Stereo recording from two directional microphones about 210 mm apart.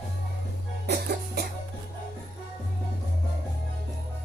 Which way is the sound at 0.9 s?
50° right (ahead or behind).